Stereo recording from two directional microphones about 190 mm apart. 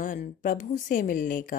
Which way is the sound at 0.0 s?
45° left (ahead or behind).